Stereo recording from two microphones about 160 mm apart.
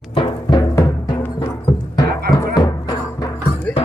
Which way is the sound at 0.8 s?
20° left (ahead or behind).